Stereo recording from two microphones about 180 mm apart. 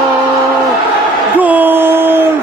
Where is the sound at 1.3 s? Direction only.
10° right (ahead or behind).